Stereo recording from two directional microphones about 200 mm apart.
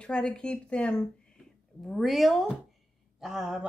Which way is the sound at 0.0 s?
5° left (ahead or behind).